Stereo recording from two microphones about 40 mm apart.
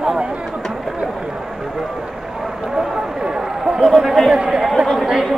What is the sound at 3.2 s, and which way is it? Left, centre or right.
Run, centre.